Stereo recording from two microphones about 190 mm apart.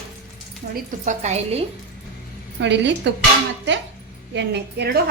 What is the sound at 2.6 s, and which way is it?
Speech, 70° right (ahead or behind).